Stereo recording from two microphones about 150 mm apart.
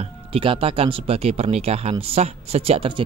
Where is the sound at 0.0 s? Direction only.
35° right (ahead or behind).